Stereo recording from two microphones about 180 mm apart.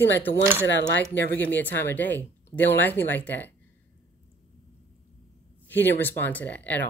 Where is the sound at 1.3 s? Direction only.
10° left (ahead or behind).